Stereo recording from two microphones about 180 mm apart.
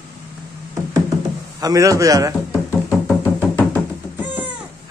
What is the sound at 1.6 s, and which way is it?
Speech, 20° right (ahead or behind).